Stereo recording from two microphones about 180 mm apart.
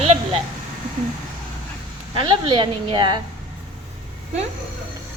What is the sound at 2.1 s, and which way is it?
Speech, 25° right (ahead or behind).